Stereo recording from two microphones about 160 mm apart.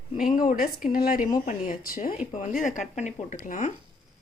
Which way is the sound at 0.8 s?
65° left (ahead or behind).